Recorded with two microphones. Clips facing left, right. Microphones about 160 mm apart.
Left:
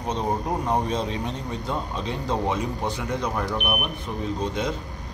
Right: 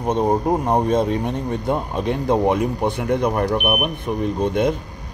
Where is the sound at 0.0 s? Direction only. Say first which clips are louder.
Right 8 dB; 55° right (ahead or behind).